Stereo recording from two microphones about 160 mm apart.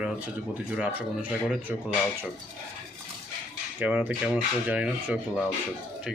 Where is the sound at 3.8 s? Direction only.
10° right (ahead or behind).